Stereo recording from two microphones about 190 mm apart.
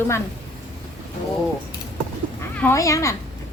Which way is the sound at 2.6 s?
15° left (ahead or behind).